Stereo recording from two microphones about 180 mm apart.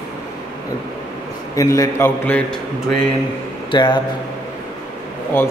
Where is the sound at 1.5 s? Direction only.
20° left (ahead or behind).